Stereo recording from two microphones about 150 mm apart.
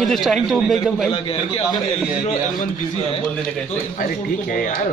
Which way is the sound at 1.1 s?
40° left (ahead or behind).